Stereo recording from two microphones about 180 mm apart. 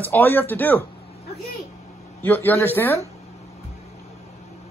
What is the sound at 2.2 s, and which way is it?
Speech, 10° left (ahead or behind).